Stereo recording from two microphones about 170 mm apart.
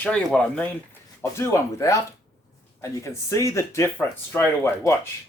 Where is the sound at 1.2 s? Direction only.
15° left (ahead or behind).